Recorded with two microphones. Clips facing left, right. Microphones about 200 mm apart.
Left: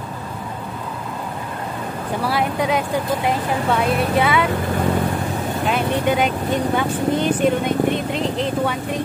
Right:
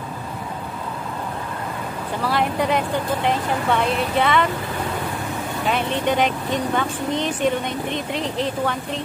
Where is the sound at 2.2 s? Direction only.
5° left (ahead or behind).